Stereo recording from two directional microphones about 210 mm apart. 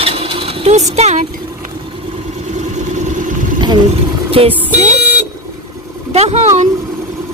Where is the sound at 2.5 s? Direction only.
35° right (ahead or behind).